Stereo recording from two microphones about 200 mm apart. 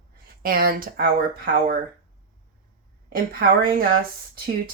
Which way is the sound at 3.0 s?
45° right (ahead or behind).